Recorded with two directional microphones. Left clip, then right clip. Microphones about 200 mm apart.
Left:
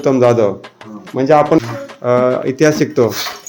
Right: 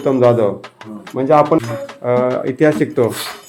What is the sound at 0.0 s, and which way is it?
A man's voice, 15° left (ahead or behind).